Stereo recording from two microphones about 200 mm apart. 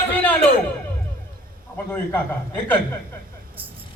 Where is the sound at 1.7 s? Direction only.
10° left (ahead or behind).